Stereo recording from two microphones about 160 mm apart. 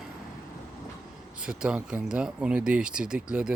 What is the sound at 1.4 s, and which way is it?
Speech, 5° right (ahead or behind).